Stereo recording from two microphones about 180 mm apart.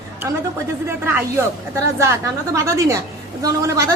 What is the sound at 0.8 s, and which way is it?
Speech, 15° right (ahead or behind).